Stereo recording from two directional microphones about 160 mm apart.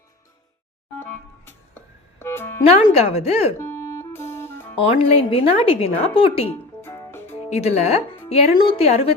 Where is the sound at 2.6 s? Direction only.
35° left (ahead or behind).